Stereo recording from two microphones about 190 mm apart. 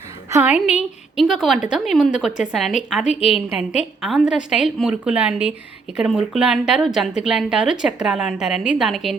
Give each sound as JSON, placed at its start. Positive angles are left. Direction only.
{"t": 0.3, "sound": "a woman's voice", "side_deg": -10}
{"t": 3.0, "sound": "a woman's voice", "side_deg": 35}
{"t": 3.3, "sound": "a woman's voice", "side_deg": -5}